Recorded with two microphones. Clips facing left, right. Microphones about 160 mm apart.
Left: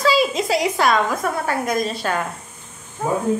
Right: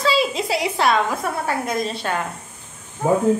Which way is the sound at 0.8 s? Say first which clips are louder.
Right 1 dB; 30° right (ahead or behind).